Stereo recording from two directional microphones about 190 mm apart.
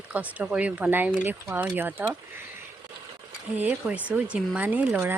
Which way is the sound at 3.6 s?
10° right (ahead or behind).